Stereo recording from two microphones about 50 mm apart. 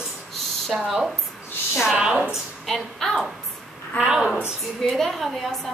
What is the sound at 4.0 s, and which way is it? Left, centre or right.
Speech, centre.